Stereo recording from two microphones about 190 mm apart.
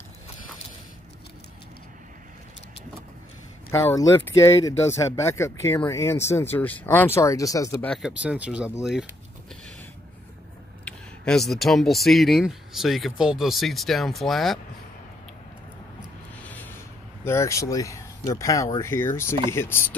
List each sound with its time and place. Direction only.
3.7 s speech: 15° left (ahead or behind)
7.9 s speech: 5° right (ahead or behind)
10.9 s speech: 5° left (ahead or behind)
16.3 s music: 10° left (ahead or behind)
17.2 s speech: 15° left (ahead or behind)